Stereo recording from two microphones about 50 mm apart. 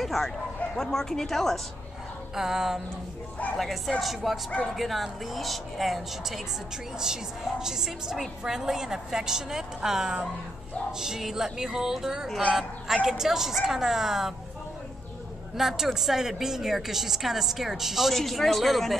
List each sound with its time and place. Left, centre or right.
0.0 s a sound: centre
0.7 s speech: centre
2.3 s a woman's voice: centre
15.5 s a woman's voice: centre